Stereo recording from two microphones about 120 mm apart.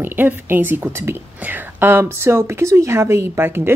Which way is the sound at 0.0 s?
15° right (ahead or behind).